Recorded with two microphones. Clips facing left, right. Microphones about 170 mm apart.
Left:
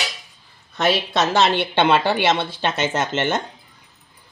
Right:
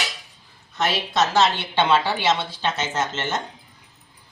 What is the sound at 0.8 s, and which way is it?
A woman's voice, 65° left (ahead or behind).